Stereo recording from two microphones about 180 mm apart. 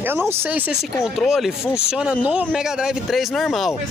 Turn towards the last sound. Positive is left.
turn(degrees=0)  # may be behind; listen again after turning